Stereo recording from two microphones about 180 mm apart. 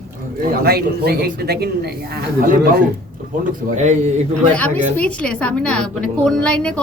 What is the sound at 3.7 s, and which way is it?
Speech, 40° right (ahead or behind).